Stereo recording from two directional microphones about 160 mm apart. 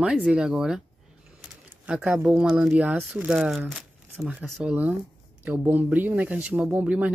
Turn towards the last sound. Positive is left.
turn(degrees=-10)  # may be behind; listen again after turning